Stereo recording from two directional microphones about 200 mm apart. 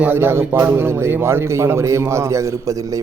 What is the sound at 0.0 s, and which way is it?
A man's voice, 10° right (ahead or behind).